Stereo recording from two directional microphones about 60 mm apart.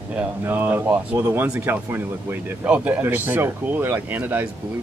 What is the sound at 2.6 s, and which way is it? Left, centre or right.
Speech, right.